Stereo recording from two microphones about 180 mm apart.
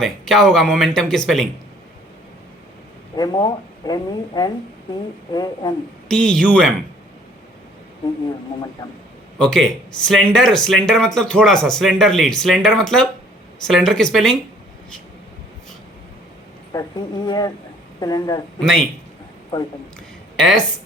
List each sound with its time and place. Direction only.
0.0 s speech: centre (ahead or behind)
3.2 s speech: 25° left (ahead or behind)
6.1 s speech: 5° left (ahead or behind)
9.4 s speech: 5° left (ahead or behind)
17.2 s speech: 20° left (ahead or behind)
18.6 s speech: centre (ahead or behind)
20.3 s speech: centre (ahead or behind)